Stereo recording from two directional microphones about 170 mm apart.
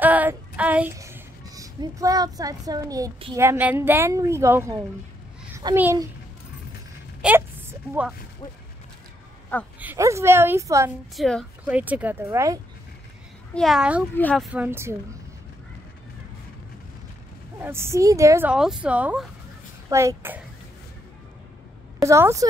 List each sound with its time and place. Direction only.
0.0 s a sound: 10° right (ahead or behind)
3.3 s speech: 15° right (ahead or behind)
5.8 s speech: 15° right (ahead or behind)
7.2 s a sound: 10° right (ahead or behind)
9.8 s speech: 15° right (ahead or behind)
11.1 s a child's voice: 5° left (ahead or behind)
11.6 s speech: 10° right (ahead or behind)
13.6 s a child's voice: centre (ahead or behind)
14.1 s speech: 5° left (ahead or behind); by 15.0 s 15° right (ahead or behind)
17.6 s speech: 15° right (ahead or behind)
22.0 s speech: 15° right (ahead or behind)